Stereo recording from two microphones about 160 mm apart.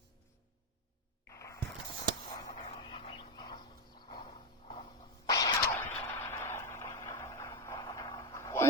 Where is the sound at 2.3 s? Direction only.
30° left (ahead or behind).